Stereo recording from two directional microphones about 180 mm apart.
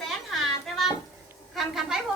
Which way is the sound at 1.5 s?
Centre (ahead or behind).